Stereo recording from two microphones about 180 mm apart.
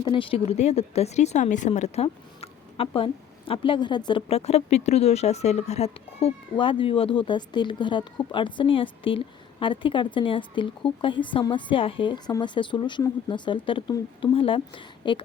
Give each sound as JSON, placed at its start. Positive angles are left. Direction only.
{"t": 0.0, "sound": "speech", "side_deg": 30}